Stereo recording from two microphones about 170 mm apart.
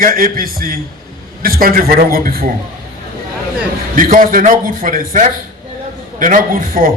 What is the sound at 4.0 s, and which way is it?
A man's voice, 55° right (ahead or behind).